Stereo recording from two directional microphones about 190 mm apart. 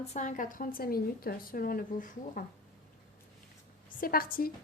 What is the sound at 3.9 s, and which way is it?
Speech, 50° left (ahead or behind).